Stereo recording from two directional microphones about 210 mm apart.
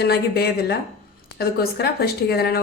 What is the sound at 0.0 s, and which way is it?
Speech, 50° left (ahead or behind).